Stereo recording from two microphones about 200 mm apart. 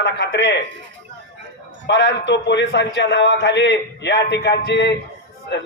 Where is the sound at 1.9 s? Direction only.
65° left (ahead or behind).